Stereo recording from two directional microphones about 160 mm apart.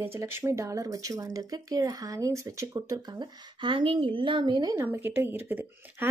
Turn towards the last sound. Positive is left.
turn(degrees=-10)  # may be behind; listen again after turning